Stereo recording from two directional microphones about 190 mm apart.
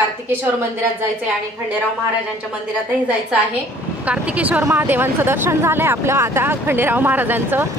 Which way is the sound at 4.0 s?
5° right (ahead or behind).